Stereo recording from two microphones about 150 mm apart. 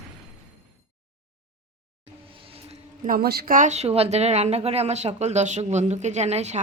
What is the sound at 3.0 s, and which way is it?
A woman's voice, 80° right.